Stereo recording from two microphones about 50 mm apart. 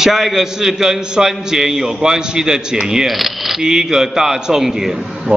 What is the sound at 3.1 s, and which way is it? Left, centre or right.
A man's voice, centre.